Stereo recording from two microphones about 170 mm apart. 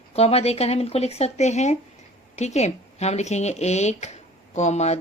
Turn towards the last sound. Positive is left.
turn(degrees=40)  # may be behind; listen again after turning